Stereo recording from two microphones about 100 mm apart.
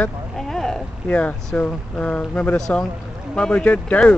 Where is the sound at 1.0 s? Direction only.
15° left (ahead or behind).